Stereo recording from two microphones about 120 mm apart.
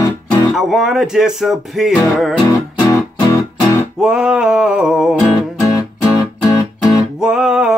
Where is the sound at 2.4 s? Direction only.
30° left (ahead or behind).